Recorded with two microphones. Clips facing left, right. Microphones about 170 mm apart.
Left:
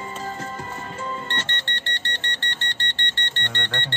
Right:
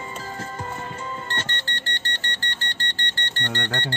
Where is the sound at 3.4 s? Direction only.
40° right (ahead or behind).